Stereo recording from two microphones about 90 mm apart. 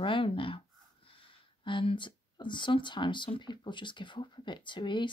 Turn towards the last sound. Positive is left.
turn(degrees=60)  # may be behind; listen again after turning